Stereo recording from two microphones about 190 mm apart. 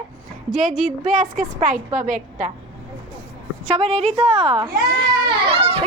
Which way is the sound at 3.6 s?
35° right (ahead or behind).